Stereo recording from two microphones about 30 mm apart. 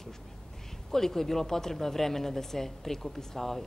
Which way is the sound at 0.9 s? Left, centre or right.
Centre.